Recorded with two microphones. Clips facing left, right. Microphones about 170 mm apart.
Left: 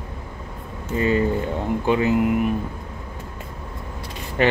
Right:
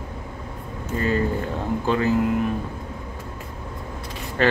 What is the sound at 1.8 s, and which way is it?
Speech, 15° left (ahead or behind).